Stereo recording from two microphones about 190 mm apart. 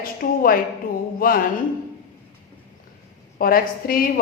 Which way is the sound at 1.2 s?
50° left (ahead or behind).